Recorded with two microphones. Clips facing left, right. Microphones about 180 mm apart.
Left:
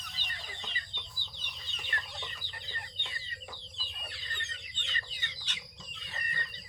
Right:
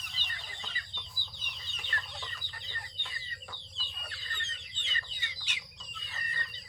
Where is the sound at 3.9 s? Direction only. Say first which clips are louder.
Left 1 dB; 20° left (ahead or behind).